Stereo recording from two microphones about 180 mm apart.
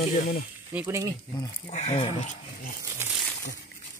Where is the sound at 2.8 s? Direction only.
15° right (ahead or behind).